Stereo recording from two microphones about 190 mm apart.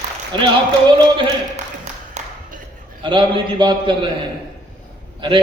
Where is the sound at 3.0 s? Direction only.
25° right (ahead or behind).